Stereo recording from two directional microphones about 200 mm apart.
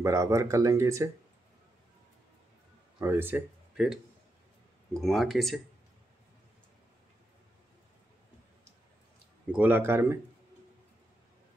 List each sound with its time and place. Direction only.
0.0 s speech: 15° right (ahead or behind)
3.0 s speech: 10° right (ahead or behind)
9.5 s speech: 10° right (ahead or behind)